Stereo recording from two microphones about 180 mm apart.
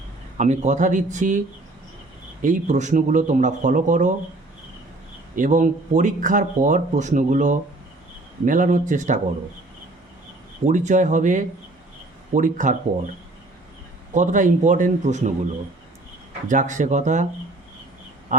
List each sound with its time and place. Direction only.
0.3 s speech: 40° right (ahead or behind)
2.4 s speech: 45° right (ahead or behind)
5.4 s speech: 45° right (ahead or behind)
10.7 s speech: 45° right (ahead or behind)
14.1 s speech: 45° right (ahead or behind)
16.5 s speech: 45° right (ahead or behind)
18.3 s duck: 45° right (ahead or behind)